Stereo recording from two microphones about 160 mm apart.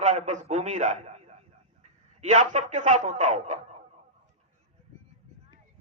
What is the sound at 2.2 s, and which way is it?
A man's voice, 50° right (ahead or behind).